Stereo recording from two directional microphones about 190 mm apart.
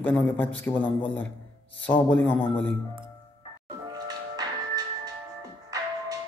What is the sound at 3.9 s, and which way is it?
Music, 20° right (ahead or behind).